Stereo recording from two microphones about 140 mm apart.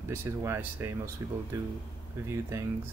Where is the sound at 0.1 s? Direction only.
15° right (ahead or behind).